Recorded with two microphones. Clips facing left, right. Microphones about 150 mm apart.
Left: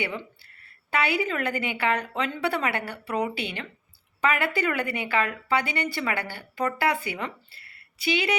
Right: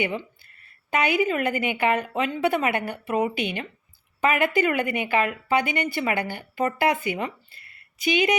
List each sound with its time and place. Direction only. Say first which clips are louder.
0.9 s a woman's voice: right 3 dB; 15° right (ahead or behind)